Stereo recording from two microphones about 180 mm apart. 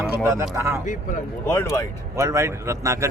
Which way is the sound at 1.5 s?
15° left (ahead or behind).